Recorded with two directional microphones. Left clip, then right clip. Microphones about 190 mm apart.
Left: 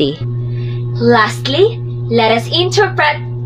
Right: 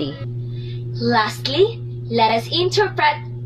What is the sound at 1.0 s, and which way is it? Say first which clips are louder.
Speech: left 7 dB; 10° right (ahead or behind).